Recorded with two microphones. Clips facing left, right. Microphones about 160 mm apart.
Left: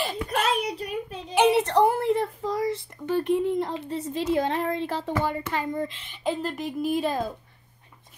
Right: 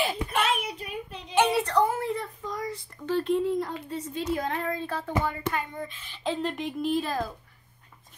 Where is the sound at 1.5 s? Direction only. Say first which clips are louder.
Left 4 dB; 25° left (ahead or behind).